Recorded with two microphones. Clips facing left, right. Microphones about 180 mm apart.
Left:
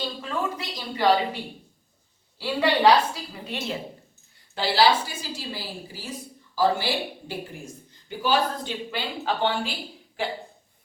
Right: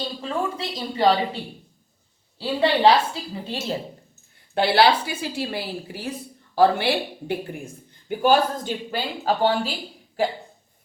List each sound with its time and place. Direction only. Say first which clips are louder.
0.2 s a woman's voice: right 3 dB; 30° right (ahead or behind)
2.4 s a woman's voice: right 2 dB; 25° right (ahead or behind)
4.5 s a woman's voice: right 3 dB; 60° right (ahead or behind); by 9.7 s 40° right (ahead or behind)